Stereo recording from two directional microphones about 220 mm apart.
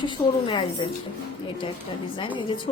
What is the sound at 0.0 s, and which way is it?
Speech, 20° left (ahead or behind).